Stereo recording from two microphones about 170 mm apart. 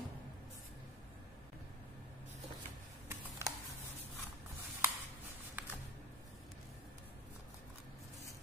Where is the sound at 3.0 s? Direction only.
15° right (ahead or behind).